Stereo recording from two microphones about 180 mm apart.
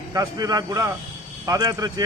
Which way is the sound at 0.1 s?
20° right (ahead or behind).